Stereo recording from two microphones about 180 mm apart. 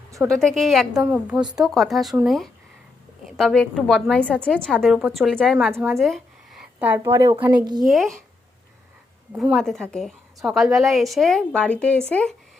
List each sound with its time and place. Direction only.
0.3 s a woman's voice: centre (ahead or behind)
6.0 s speech: centre (ahead or behind); by 7.9 s 25° right (ahead or behind)
7.9 s a woman's voice: centre (ahead or behind)
9.3 s a woman's voice: centre (ahead or behind)